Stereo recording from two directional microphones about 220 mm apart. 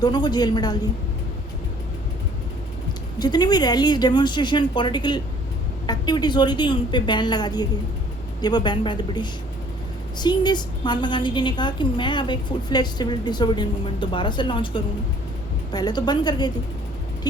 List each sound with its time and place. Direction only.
0.0 s a woman's voice: 20° left (ahead or behind)
3.2 s a woman's voice: 20° left (ahead or behind)